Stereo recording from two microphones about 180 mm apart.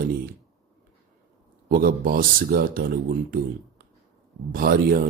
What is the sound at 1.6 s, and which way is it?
Speech, 55° right (ahead or behind).